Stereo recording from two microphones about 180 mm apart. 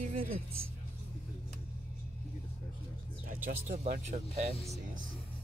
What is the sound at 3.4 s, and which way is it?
Speech, 45° right (ahead or behind).